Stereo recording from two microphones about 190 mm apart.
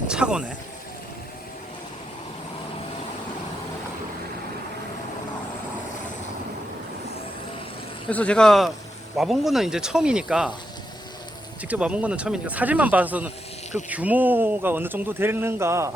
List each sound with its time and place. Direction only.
0.1 s speech: 5° right (ahead or behind)
8.1 s speech: 5° left (ahead or behind)
11.7 s speech: 5° right (ahead or behind)